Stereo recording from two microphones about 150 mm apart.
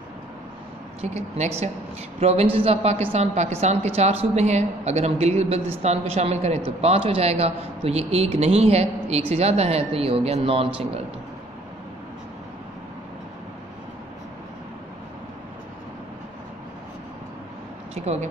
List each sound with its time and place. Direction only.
1.0 s a woman's voice: 50° right (ahead or behind)
17.9 s speech: 45° right (ahead or behind)